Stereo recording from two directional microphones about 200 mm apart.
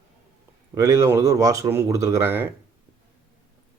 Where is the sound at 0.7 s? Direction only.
15° right (ahead or behind).